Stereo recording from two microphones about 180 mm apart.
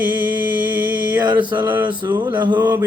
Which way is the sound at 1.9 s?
25° right (ahead or behind).